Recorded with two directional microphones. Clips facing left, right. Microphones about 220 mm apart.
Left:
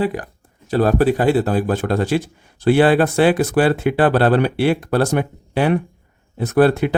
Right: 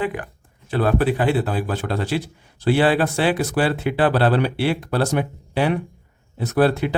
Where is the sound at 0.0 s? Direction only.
35° left (ahead or behind).